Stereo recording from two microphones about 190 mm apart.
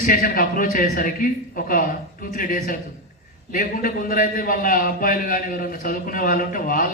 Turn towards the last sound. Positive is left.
turn(degrees=45)  # may be behind; listen again after turning